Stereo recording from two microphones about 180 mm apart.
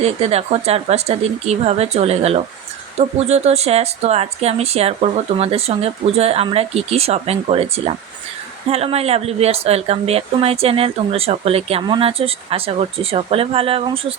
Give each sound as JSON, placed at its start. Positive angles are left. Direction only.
{"t": 0.0, "sound": "speech", "side_deg": -35}
{"t": 8.7, "sound": "speech", "side_deg": -35}